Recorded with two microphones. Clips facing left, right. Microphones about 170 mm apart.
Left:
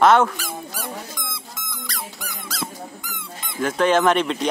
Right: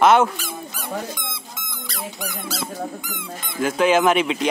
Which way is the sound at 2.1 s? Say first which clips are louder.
Right 5 dB; 20° right (ahead or behind).